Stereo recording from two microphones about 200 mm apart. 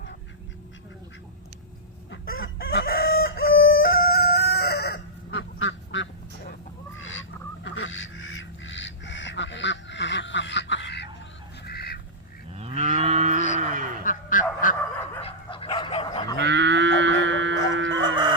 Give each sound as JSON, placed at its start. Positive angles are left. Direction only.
{"t": 2.6, "sound": "chicken", "side_deg": 50}
{"t": 6.9, "sound": "duck", "side_deg": 75}
{"t": 12.5, "sound": "moo", "side_deg": -30}
{"t": 14.0, "sound": "bow-wow", "side_deg": 40}
{"t": 15.2, "sound": "goose", "side_deg": 25}
{"t": 16.4, "sound": "a sound", "side_deg": -60}
{"t": 18.0, "sound": "chicken", "side_deg": -20}